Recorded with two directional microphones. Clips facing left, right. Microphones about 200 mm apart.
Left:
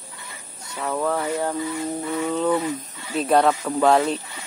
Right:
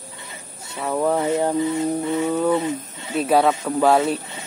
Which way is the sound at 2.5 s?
25° right (ahead or behind).